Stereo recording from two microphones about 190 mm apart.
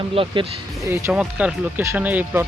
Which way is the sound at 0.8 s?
15° right (ahead or behind).